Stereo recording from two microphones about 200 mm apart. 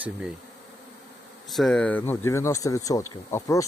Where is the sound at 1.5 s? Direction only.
Centre (ahead or behind).